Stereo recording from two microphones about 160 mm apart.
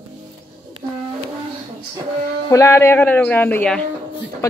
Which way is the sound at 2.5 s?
15° left (ahead or behind).